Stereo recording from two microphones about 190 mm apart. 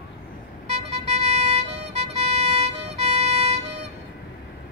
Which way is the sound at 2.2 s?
35° right (ahead or behind).